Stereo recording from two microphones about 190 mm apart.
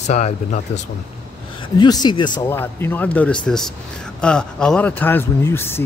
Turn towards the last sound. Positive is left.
turn(degrees=10)  # may be behind; listen again after turning